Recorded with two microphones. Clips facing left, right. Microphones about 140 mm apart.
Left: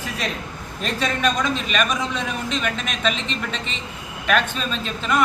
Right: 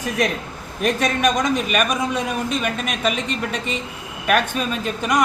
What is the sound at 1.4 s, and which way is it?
Speech, 10° right (ahead or behind).